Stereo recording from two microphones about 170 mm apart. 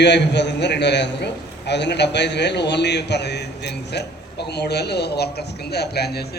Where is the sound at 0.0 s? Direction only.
90° left.